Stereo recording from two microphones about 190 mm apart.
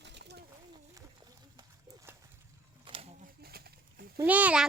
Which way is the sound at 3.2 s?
55° right (ahead or behind).